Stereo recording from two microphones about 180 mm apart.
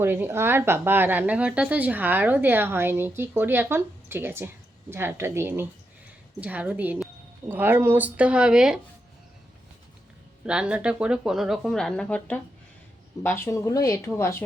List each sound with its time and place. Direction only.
0.0 s a woman's voice: 10° right (ahead or behind)
10.4 s speech: 5° right (ahead or behind); by 14.4 s 15° left (ahead or behind)